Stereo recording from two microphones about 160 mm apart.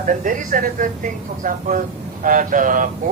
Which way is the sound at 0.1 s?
60° right (ahead or behind).